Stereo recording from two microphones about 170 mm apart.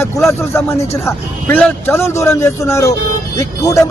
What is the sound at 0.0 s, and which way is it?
A man's voice, 15° left (ahead or behind).